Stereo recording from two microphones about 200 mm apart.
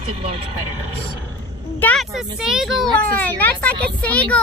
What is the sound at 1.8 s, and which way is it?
Speech, 5° left (ahead or behind).